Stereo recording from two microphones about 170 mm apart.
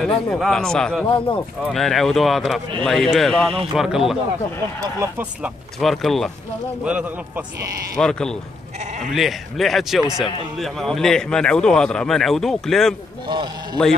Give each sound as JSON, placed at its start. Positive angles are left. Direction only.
{"t": 0.0, "sound": "speech", "side_deg": 5}
{"t": 1.0, "sound": "speech", "side_deg": 30}
{"t": 1.7, "sound": "speech", "side_deg": 0}
{"t": 4.7, "sound": "speech", "side_deg": -20}
{"t": 5.8, "sound": "speech", "side_deg": 0}
{"t": 8.0, "sound": "speech", "side_deg": 5}